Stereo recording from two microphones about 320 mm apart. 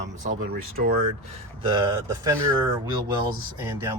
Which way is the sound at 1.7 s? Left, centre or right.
Centre.